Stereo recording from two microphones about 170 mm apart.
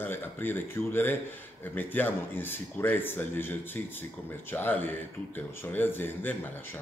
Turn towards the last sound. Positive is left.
turn(degrees=10)  # may be behind; listen again after turning